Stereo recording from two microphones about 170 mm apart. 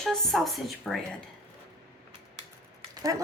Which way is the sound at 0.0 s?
Centre (ahead or behind).